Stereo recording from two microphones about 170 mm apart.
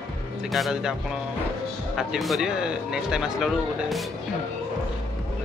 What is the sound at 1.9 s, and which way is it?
Speech, centre (ahead or behind).